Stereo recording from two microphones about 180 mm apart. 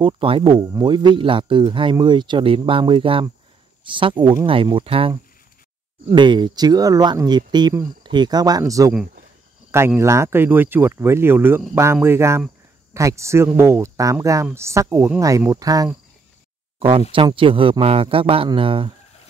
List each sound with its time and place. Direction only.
0.0 s speech: 30° right (ahead or behind)
17.1 s speech: 30° right (ahead or behind)